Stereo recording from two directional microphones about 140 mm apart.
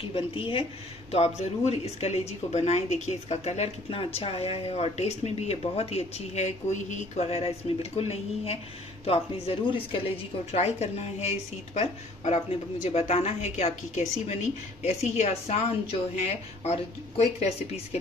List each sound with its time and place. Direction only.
0.0 s a woman's voice: 40° left (ahead or behind)